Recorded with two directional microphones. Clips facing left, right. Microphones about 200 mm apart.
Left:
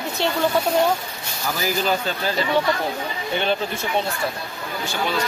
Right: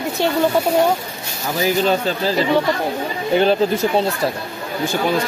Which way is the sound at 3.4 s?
35° right (ahead or behind).